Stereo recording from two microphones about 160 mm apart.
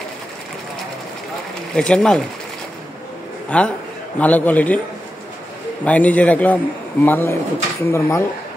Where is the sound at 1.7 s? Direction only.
5° left (ahead or behind).